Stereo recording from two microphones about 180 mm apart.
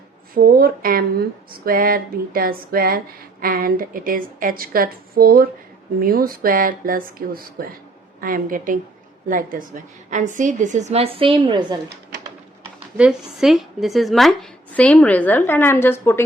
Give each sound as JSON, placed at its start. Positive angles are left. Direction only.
{"t": 0.3, "sound": "speech", "side_deg": -55}
{"t": 13.0, "sound": "a woman's voice", "side_deg": -5}